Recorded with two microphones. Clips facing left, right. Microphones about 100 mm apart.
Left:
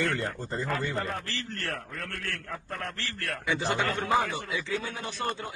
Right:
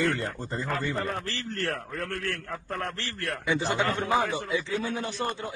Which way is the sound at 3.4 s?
20° right (ahead or behind).